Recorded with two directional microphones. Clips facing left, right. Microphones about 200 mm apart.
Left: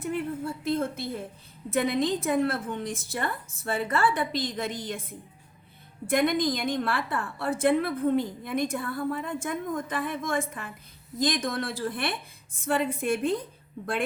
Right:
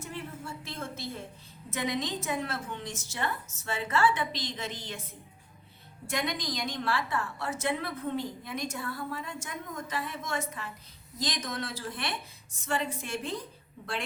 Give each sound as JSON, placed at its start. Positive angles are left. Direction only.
{"t": 0.0, "sound": "a woman's voice", "side_deg": 55}